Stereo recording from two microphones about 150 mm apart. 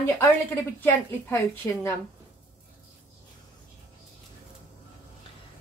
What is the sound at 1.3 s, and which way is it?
Speech, 15° left (ahead or behind).